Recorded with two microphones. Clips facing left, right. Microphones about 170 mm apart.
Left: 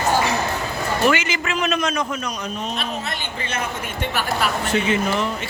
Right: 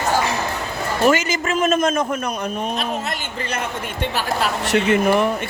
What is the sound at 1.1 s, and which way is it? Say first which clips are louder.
A man's voice: right 5 dB; 40° right (ahead or behind).